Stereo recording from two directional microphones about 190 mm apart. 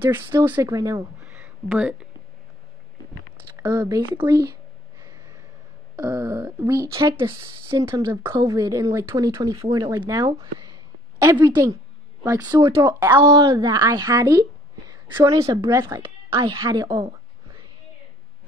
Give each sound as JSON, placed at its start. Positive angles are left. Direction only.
{"t": 0.0, "sound": "speech", "side_deg": -10}
{"t": 1.2, "sound": "a sound", "side_deg": -10}
{"t": 3.5, "sound": "speech", "side_deg": -15}
{"t": 5.9, "sound": "speech", "side_deg": -15}